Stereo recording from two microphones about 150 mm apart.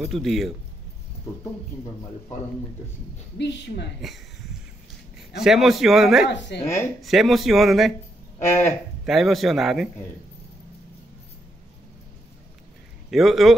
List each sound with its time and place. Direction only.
0.0 s speech: centre (ahead or behind)
5.4 s speech: centre (ahead or behind)
6.6 s speech: 15° left (ahead or behind)
7.0 s speech: centre (ahead or behind)
8.4 s speech: 15° left (ahead or behind)
9.0 s speech: centre (ahead or behind)
13.1 s speech: centre (ahead or behind)